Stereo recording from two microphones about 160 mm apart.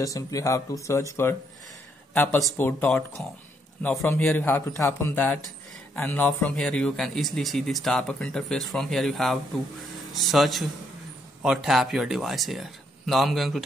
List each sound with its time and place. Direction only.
0.0 s speech: 20° left (ahead or behind)
2.5 s speech: 10° left (ahead or behind)